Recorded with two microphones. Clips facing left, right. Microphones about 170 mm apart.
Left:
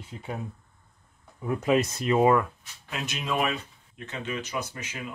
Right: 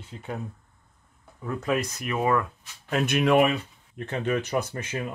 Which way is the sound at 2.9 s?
55° right (ahead or behind).